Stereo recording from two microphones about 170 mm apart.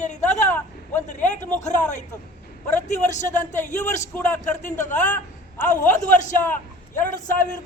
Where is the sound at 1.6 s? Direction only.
45° left (ahead or behind).